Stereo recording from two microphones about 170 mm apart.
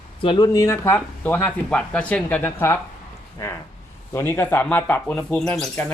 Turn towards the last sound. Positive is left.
turn(degrees=5)  # may be behind; listen again after turning